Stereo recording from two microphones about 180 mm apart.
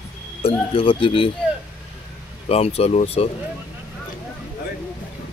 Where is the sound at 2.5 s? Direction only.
35° left (ahead or behind).